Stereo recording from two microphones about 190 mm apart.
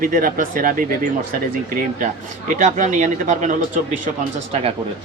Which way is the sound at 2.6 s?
40° right (ahead or behind).